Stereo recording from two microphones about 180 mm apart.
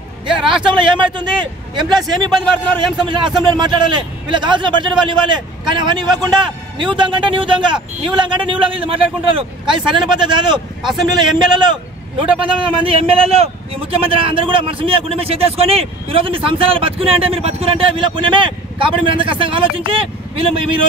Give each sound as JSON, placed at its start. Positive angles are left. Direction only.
{"t": 0.7, "sound": "a man's voice", "side_deg": -25}